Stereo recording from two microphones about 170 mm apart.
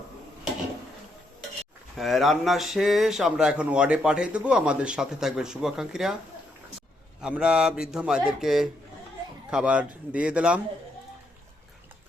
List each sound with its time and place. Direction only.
2.0 s speech: centre (ahead or behind)
7.2 s a man's voice: 5° right (ahead or behind)